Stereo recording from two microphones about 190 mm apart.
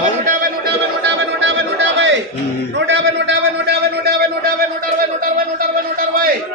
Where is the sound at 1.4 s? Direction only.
70° right (ahead or behind).